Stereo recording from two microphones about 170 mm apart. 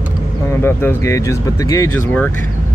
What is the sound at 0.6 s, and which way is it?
Speech, 15° left (ahead or behind).